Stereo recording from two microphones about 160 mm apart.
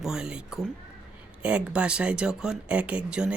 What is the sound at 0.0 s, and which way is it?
Speech, 5° right (ahead or behind).